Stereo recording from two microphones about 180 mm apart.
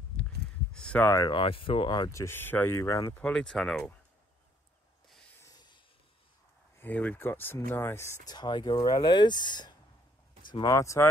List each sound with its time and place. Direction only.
0.7 s speech: 5° left (ahead or behind)
3.2 s speech: 5° left (ahead or behind)
5.4 s a sound: 20° left (ahead or behind)
6.8 s speech: 10° left (ahead or behind)